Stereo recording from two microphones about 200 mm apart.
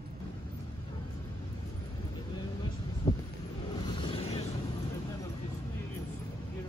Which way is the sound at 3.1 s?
20° left (ahead or behind).